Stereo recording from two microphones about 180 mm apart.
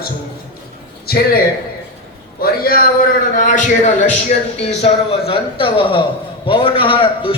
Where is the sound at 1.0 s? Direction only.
55° left (ahead or behind).